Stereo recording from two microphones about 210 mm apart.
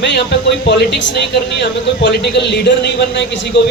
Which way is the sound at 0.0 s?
55° left (ahead or behind).